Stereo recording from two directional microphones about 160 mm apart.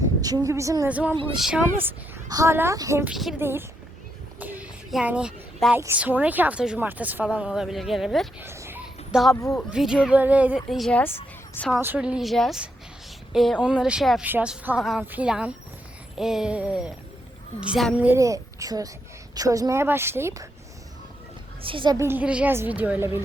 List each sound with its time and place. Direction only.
0.0 s a woman's voice: 25° right (ahead or behind)
0.9 s a woman's voice: 10° right (ahead or behind)
3.0 s speech: 5° right (ahead or behind)
3.3 s a woman's voice: 15° right (ahead or behind)
4.4 s child singing: 10° right (ahead or behind)
5.7 s a woman's voice: 10° right (ahead or behind)
8.4 s dog: 15° right (ahead or behind)
9.3 s speech: 20° left (ahead or behind)
9.6 s a woman's voice: 5° right (ahead or behind)
11.8 s a woman's voice: 10° right (ahead or behind)
18.1 s a woman's voice: 20° right (ahead or behind)
21.6 s a woman's voice: 30° right (ahead or behind)
21.9 s a woman's voice: 15° right (ahead or behind)